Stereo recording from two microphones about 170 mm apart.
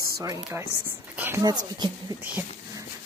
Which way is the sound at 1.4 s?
25° right (ahead or behind).